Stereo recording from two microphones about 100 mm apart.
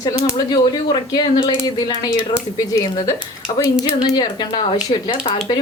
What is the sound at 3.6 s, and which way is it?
Speech, 50° left (ahead or behind).